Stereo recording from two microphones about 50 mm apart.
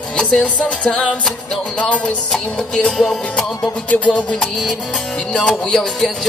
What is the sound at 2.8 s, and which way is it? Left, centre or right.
Music, centre.